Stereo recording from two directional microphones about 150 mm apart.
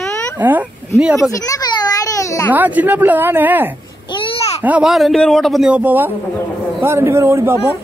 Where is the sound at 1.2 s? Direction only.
20° left (ahead or behind).